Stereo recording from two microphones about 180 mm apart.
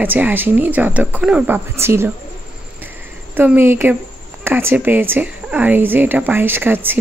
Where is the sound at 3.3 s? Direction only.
10° right (ahead or behind).